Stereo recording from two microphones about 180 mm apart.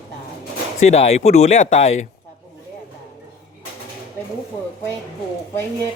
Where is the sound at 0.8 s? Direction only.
35° left (ahead or behind).